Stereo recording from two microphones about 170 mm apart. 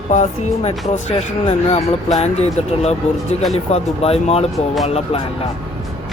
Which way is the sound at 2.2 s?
40° left (ahead or behind).